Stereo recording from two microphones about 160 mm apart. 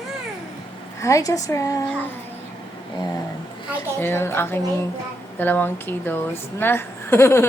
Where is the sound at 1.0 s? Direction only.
20° left (ahead or behind).